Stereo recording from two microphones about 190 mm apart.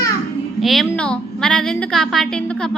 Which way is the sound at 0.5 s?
Centre (ahead or behind).